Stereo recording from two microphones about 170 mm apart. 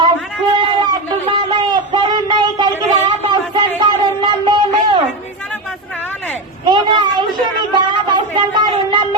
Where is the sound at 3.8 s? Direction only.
25° right (ahead or behind).